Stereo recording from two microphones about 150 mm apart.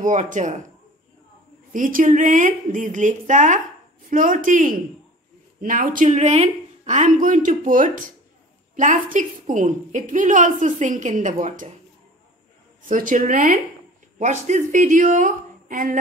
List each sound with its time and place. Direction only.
0.0 s a woman's voice: 55° right (ahead or behind)
1.7 s a woman's voice: 65° right (ahead or behind)
12.8 s a woman's voice: 60° right (ahead or behind)